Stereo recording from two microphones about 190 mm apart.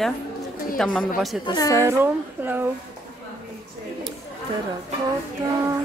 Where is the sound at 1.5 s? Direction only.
20° left (ahead or behind).